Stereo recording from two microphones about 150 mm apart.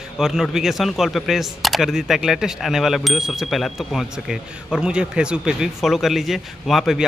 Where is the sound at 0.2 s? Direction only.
Centre (ahead or behind).